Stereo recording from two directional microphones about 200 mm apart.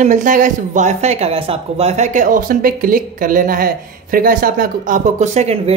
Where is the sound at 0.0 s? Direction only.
40° right (ahead or behind).